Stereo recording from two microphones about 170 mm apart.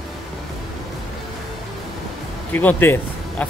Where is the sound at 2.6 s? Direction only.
10° left (ahead or behind).